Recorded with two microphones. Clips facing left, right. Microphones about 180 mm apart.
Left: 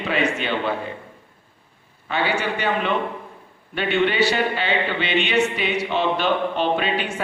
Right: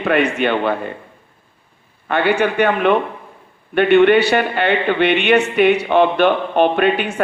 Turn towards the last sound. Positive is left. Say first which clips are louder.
# right 7 dB
turn(degrees=-60)  # may be behind; listen again after turning